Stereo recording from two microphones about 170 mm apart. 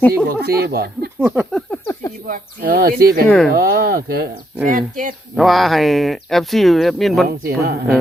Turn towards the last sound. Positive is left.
turn(degrees=-60)  # may be behind; listen again after turning